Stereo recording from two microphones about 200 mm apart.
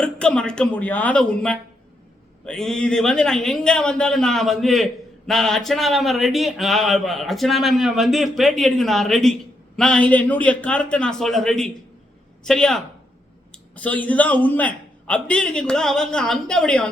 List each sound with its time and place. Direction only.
0.0 s a man's voice: 5° left (ahead or behind)